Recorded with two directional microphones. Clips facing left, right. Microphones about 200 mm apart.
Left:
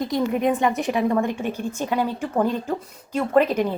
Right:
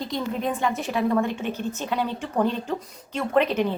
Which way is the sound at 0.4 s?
15° left (ahead or behind).